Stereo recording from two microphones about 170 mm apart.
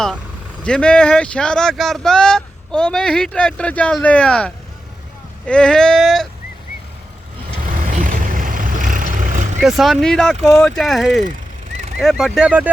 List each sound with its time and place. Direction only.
0.6 s speech: 5° left (ahead or behind)
7.9 s vehicle: 50° right (ahead or behind)
9.6 s speech: centre (ahead or behind)